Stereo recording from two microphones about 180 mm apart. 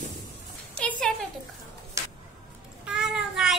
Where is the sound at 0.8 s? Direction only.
5° left (ahead or behind).